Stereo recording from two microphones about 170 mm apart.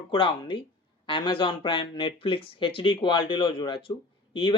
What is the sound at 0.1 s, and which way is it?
Speech, 30° left (ahead or behind).